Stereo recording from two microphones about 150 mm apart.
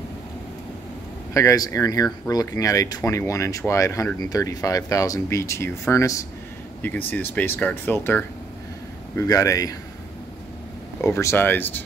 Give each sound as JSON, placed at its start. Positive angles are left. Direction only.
{"t": 1.3, "sound": "speech", "side_deg": 20}
{"t": 11.0, "sound": "speech", "side_deg": 20}